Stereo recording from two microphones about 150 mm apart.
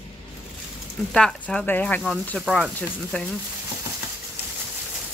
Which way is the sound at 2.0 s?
Centre (ahead or behind).